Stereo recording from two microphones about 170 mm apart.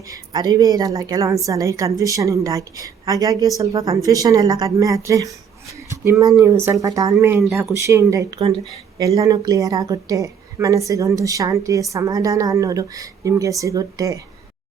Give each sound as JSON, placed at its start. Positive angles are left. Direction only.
{"t": 0.1, "sound": "a woman's voice", "side_deg": -20}
{"t": 7.4, "sound": "speech", "side_deg": 0}
{"t": 7.7, "sound": "a woman's voice", "side_deg": -15}